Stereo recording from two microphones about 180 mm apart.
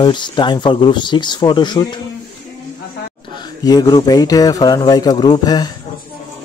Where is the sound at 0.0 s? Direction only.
25° left (ahead or behind).